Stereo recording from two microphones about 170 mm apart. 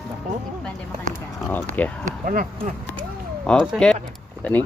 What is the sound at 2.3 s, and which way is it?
Speech, 55° right (ahead or behind).